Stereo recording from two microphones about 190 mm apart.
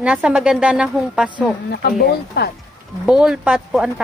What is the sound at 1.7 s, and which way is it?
Speech, 55° left (ahead or behind).